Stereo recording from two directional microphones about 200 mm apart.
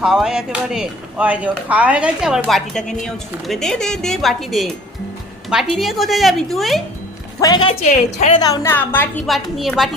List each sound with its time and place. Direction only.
0.0 s speech: centre (ahead or behind)
7.4 s a woman's voice: 25° left (ahead or behind)
7.8 s a woman's voice: 40° left (ahead or behind)
8.3 s a woman's voice: 20° left (ahead or behind); by 9.9 s centre (ahead or behind)